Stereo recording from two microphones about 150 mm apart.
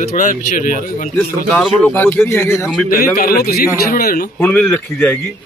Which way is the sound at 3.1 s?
85° left.